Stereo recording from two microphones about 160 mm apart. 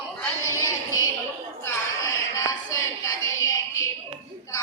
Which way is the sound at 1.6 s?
20° left (ahead or behind).